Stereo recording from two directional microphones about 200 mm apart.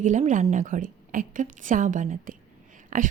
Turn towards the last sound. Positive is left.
turn(degrees=-40)  # may be behind; listen again after turning